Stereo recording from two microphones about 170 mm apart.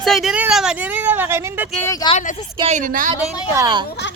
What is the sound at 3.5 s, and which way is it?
Speech, 20° right (ahead or behind).